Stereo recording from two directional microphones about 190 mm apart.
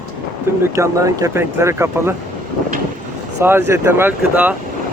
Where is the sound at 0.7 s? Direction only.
15° right (ahead or behind).